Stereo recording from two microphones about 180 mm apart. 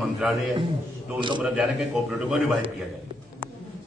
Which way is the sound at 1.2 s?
25° right (ahead or behind).